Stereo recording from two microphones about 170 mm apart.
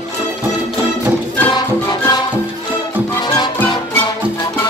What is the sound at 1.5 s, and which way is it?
Music, 25° left (ahead or behind).